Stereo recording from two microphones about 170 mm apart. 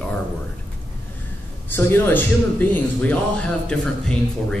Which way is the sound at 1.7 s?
10° left (ahead or behind).